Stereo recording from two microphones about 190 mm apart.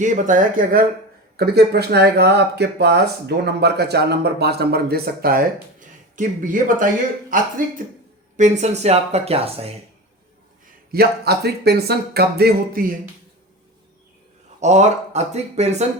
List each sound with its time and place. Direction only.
0.0 s speech: 45° right (ahead or behind)
1.4 s speech: 60° right (ahead or behind)
8.4 s speech: 40° right (ahead or behind)
10.9 s speech: 60° right (ahead or behind)
14.6 s speech: 40° right (ahead or behind)